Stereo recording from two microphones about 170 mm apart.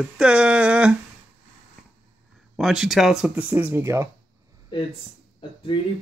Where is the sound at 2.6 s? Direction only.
Centre (ahead or behind).